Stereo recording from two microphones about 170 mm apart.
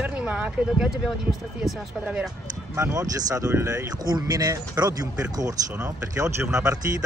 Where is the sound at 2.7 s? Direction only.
20° right (ahead or behind).